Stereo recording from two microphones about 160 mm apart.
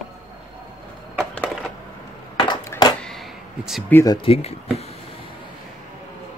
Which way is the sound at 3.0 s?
Centre (ahead or behind).